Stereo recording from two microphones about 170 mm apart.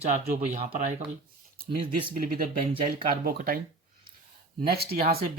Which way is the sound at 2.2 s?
60° right (ahead or behind).